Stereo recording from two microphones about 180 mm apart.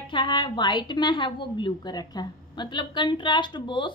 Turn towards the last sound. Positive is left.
turn(degrees=25)  # may be behind; listen again after turning